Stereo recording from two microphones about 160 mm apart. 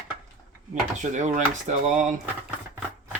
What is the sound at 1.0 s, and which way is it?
Speech, 50° right (ahead or behind).